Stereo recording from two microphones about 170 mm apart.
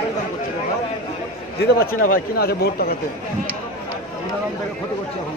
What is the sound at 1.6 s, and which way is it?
A man's voice, 60° left (ahead or behind).